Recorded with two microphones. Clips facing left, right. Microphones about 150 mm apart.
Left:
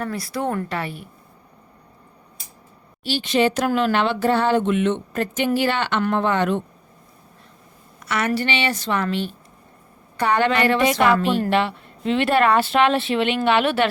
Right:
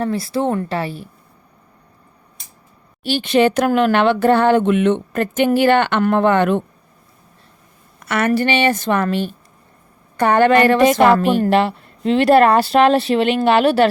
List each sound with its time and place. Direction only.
0.0 s a woman's voice: 30° right (ahead or behind)
3.0 s speech: 55° right (ahead or behind)
7.9 s a woman's voice: 50° right (ahead or behind)